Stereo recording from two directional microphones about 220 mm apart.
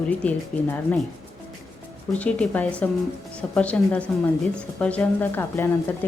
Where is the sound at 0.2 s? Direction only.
5° left (ahead or behind).